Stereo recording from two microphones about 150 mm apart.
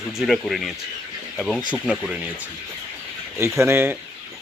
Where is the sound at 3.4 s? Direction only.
15° right (ahead or behind).